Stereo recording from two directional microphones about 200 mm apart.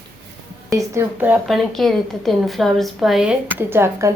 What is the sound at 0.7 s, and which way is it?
A woman's voice, 15° right (ahead or behind).